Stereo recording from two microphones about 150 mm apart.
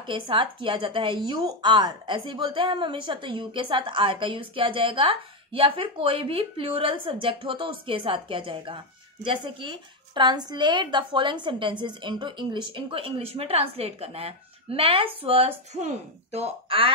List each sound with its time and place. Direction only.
0.0 s a woman's voice: 35° right (ahead or behind)